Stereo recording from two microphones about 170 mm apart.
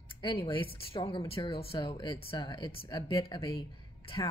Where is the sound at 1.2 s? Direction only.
30° left (ahead or behind).